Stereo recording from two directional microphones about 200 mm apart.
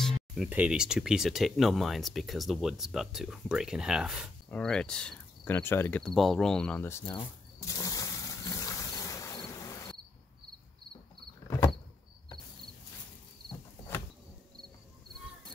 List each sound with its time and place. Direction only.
0.0 s speech: 5° right (ahead or behind); by 7.2 s 15° left (ahead or behind)
7.2 s water: 15° left (ahead or behind)
11.4 s vehicle: 15° left (ahead or behind)